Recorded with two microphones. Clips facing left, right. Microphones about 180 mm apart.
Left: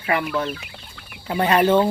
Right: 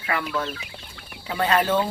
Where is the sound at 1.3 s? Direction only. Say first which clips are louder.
Left 4 dB; 20° left (ahead or behind).